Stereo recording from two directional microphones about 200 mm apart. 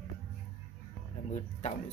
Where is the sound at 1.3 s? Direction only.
35° left (ahead or behind).